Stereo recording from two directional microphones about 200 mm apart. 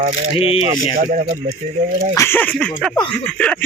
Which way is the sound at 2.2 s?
10° left (ahead or behind).